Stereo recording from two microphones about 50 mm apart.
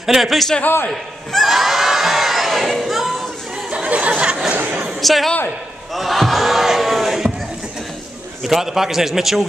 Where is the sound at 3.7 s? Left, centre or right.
Right.